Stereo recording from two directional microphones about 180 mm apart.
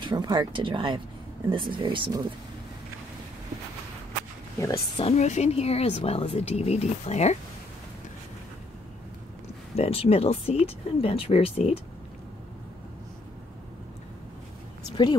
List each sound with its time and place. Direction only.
0.0 s speech: 25° right (ahead or behind)
4.6 s speech: 20° left (ahead or behind)
5.0 s speech: 40° left (ahead or behind)
9.8 s speech: 35° left (ahead or behind)